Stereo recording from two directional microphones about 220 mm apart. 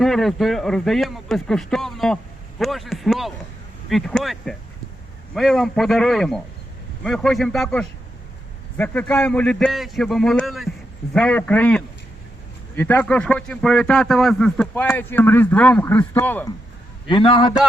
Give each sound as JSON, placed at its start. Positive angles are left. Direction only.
{"t": 0.0, "sound": "a man's voice", "side_deg": 0}
{"t": 17.1, "sound": "a man's voice", "side_deg": 20}